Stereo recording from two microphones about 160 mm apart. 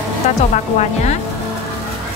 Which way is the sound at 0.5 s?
45° left (ahead or behind).